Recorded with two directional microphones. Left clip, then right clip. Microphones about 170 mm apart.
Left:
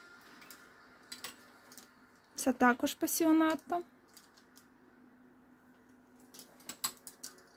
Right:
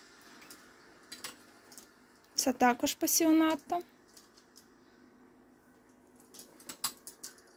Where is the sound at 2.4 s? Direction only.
25° left (ahead or behind).